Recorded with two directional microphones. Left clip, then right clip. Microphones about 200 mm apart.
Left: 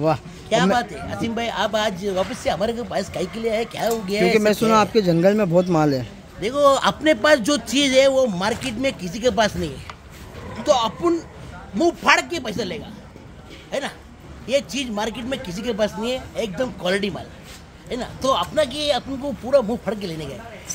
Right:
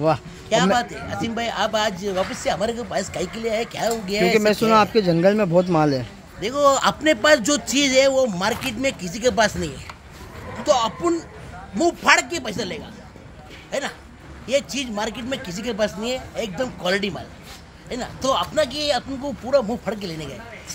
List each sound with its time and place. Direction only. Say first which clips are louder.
0.0 s a woman's voice: right 1 dB; centre (ahead or behind)